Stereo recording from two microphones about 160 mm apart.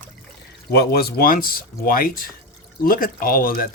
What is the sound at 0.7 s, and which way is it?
Speech, 80° left.